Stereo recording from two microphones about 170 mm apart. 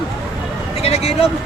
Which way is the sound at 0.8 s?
35° left (ahead or behind).